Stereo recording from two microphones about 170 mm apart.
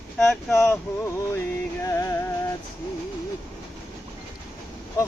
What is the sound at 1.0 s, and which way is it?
Music, 15° left (ahead or behind).